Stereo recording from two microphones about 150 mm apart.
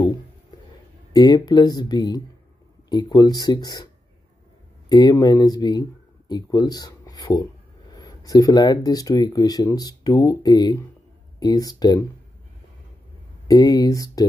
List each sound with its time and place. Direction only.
1.1 s speech: 25° left (ahead or behind)
13.5 s speech: 25° left (ahead or behind)